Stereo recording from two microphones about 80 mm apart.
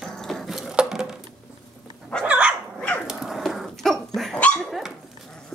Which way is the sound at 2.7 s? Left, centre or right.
Centre.